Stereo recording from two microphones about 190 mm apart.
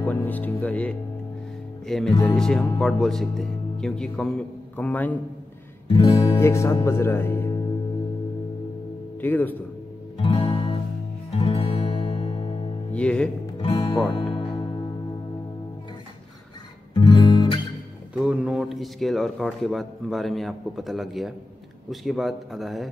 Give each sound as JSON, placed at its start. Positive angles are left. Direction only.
{"t": 0.0, "sound": "speech", "side_deg": 10}
{"t": 5.9, "sound": "music", "side_deg": 30}
{"t": 6.4, "sound": "speech", "side_deg": 15}
{"t": 9.2, "sound": "speech", "side_deg": 10}
{"t": 10.2, "sound": "music", "side_deg": 30}
{"t": 12.9, "sound": "music", "side_deg": 5}
{"t": 13.6, "sound": "music", "side_deg": 30}
{"t": 16.9, "sound": "music", "side_deg": 25}
{"t": 18.1, "sound": "speech", "side_deg": -5}